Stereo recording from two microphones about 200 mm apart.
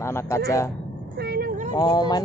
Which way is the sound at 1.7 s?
20° left (ahead or behind).